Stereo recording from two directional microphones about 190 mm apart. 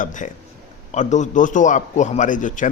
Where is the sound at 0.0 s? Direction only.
40° left (ahead or behind).